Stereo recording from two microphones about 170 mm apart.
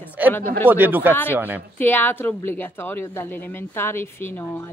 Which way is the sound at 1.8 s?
10° left (ahead or behind).